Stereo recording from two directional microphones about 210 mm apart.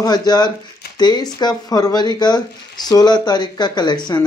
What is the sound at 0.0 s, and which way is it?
Speech, 20° left (ahead or behind).